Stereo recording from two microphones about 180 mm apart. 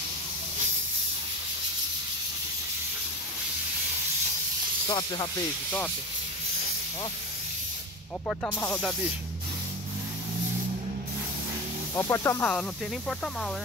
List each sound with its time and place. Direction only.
4.8 s speech: 25° left (ahead or behind)
8.3 s speech: 10° left (ahead or behind)
12.0 s speech: 15° left (ahead or behind)